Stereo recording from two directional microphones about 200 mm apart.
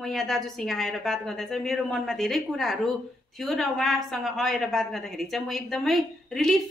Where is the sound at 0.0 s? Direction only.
Centre (ahead or behind).